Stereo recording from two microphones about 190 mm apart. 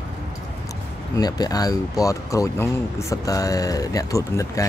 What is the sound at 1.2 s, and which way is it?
Speech, 20° left (ahead or behind).